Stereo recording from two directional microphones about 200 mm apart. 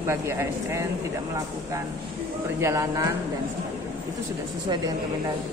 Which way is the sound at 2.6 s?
15° right (ahead or behind).